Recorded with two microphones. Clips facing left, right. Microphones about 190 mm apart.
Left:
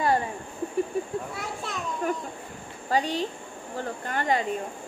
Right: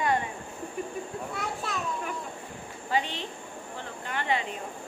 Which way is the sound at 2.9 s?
40° left (ahead or behind).